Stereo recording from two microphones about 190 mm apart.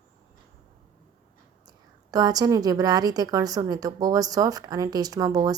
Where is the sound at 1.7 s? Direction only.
20° right (ahead or behind).